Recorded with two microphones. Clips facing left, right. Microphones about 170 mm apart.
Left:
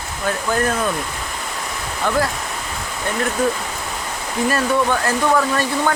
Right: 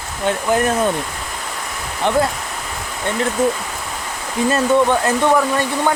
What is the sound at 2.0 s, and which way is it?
Speech, 20° right (ahead or behind).